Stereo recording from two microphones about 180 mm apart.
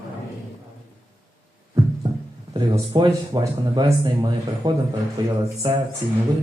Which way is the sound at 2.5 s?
20° right (ahead or behind).